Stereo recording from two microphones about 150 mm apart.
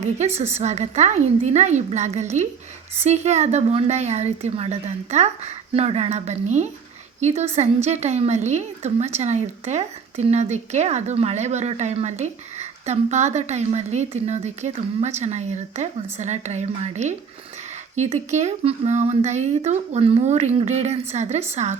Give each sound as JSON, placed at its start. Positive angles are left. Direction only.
{"t": 0.3, "sound": "a woman's voice", "side_deg": -45}